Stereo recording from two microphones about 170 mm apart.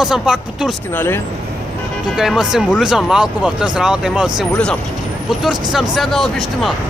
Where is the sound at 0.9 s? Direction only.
15° left (ahead or behind).